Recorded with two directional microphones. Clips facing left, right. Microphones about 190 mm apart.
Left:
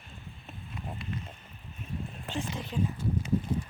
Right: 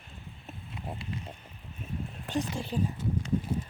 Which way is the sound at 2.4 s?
35° right (ahead or behind).